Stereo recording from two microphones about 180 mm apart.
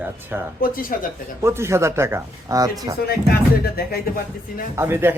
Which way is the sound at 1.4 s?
15° right (ahead or behind).